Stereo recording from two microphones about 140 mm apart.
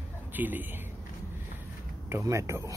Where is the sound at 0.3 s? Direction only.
15° right (ahead or behind).